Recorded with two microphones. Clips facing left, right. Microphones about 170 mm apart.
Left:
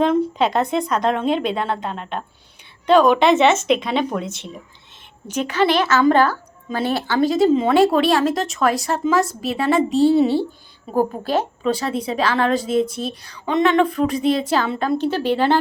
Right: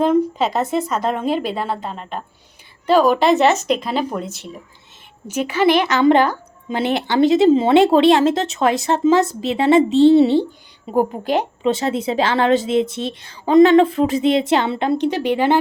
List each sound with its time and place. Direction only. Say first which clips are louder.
0.0 s a woman's voice: right 1 dB; 10° right (ahead or behind)